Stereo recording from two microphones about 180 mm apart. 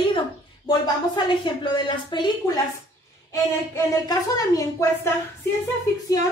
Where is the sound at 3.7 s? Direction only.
20° left (ahead or behind).